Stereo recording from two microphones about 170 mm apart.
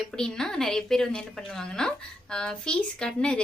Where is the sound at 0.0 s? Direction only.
5° left (ahead or behind).